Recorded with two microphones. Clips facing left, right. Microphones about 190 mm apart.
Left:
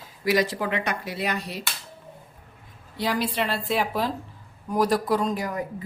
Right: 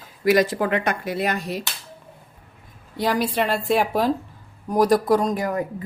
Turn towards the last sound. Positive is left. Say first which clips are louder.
# right 5 dB
turn(degrees=-50)  # may be behind; listen again after turning